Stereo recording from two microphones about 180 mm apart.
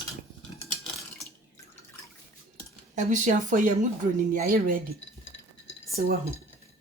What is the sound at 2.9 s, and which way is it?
A woman's voice, 45° right (ahead or behind).